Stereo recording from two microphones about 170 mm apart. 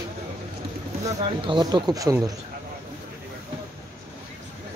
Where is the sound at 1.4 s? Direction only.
25° right (ahead or behind).